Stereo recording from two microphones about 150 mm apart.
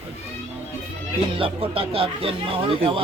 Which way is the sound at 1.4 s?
40° right (ahead or behind).